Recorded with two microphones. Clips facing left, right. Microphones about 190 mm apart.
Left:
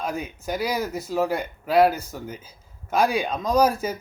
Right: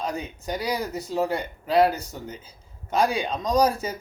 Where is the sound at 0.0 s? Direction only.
5° left (ahead or behind).